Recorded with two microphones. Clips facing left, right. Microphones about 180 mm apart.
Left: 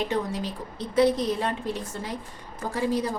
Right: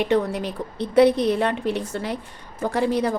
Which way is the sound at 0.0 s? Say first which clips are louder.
Right 6 dB; 65° right (ahead or behind).